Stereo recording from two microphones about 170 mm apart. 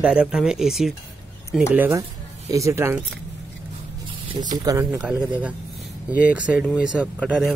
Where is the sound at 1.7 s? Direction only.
15° right (ahead or behind).